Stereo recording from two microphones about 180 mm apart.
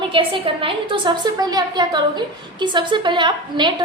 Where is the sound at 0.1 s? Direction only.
30° right (ahead or behind).